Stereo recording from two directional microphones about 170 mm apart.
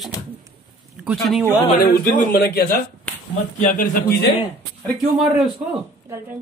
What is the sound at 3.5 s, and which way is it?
Speech, 50° left (ahead or behind).